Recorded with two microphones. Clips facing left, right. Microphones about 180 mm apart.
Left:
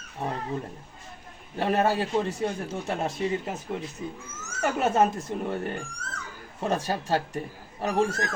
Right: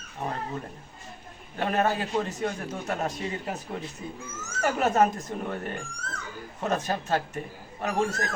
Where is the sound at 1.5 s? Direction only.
30° left (ahead or behind).